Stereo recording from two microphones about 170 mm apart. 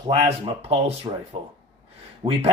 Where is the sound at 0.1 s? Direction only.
35° right (ahead or behind).